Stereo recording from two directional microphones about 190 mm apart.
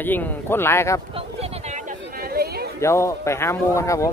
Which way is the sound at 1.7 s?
50° right (ahead or behind).